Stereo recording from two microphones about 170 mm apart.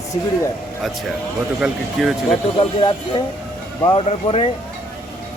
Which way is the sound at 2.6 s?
30° left (ahead or behind).